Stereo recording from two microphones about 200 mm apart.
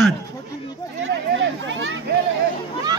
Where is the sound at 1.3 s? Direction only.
70° right (ahead or behind).